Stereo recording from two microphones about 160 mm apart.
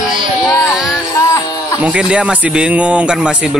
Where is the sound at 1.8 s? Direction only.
5° right (ahead or behind).